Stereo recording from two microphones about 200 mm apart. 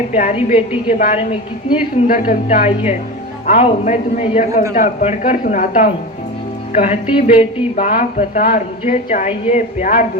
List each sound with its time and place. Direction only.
0.1 s speech: 40° left (ahead or behind)
2.0 s speech: 40° left (ahead or behind)